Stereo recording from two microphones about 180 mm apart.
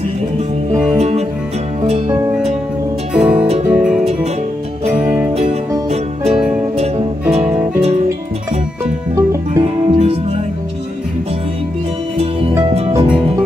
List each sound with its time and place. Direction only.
0.9 s music: 35° right (ahead or behind)
3.1 s music: 5° right (ahead or behind)
9.1 s music: 20° right (ahead or behind)
9.8 s music: 30° right (ahead or behind)
12.7 s music: 35° right (ahead or behind)